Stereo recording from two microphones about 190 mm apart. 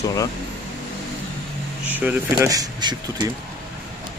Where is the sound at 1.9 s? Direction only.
10° right (ahead or behind).